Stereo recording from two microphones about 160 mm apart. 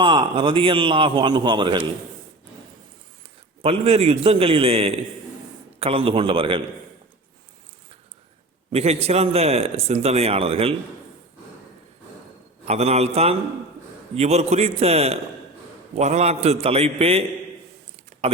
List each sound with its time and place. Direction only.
0.0 s speech: 30° right (ahead or behind)
3.6 s speech: 35° right (ahead or behind)
8.7 s speech: 40° right (ahead or behind)
12.6 s speech: 40° right (ahead or behind)
18.1 s a sound: 55° right (ahead or behind)